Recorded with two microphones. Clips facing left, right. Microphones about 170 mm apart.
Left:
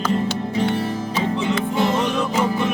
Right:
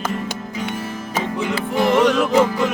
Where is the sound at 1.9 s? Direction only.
80° right.